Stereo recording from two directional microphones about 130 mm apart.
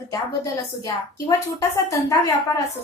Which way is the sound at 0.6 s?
25° left (ahead or behind).